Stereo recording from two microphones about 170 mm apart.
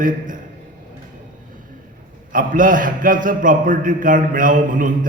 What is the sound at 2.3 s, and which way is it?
A man's voice, 50° right (ahead or behind).